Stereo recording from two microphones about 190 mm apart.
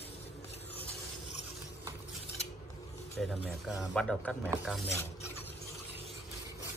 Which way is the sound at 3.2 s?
Centre (ahead or behind).